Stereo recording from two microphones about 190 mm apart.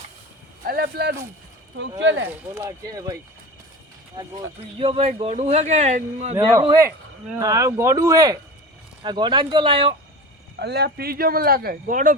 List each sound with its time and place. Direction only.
0.6 s speech: 55° right (ahead or behind)
2.0 s speech: 75° right (ahead or behind)
2.6 s a man's voice: 15° right (ahead or behind); by 6.3 s 35° right (ahead or behind)
6.3 s speech: 20° right (ahead or behind)
10.6 s speech: 60° right (ahead or behind); by 12.1 s 45° right (ahead or behind)